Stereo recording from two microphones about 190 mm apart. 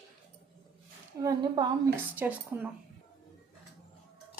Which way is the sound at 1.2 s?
20° right (ahead or behind).